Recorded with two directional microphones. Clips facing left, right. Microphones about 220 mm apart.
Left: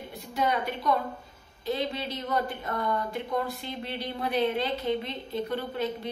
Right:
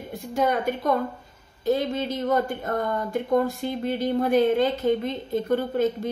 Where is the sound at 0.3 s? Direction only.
45° right (ahead or behind).